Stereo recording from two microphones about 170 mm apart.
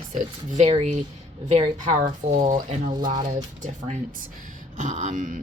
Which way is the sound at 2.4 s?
45° right (ahead or behind).